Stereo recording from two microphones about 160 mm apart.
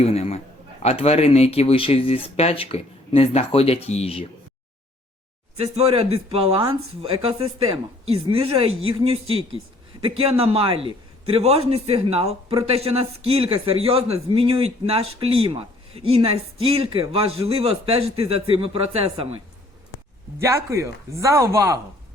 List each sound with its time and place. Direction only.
0.0 s a man's voice: 40° left (ahead or behind)
5.5 s speech: 40° right (ahead or behind)
20.7 s speech: 20° right (ahead or behind)